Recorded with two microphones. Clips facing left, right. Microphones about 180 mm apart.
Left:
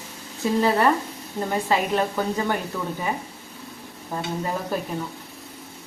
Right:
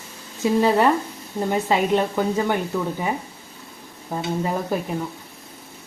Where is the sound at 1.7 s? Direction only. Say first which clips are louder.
Right 2 dB; 15° right (ahead or behind).